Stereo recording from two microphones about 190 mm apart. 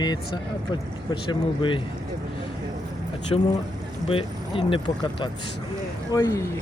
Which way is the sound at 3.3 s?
20° left (ahead or behind).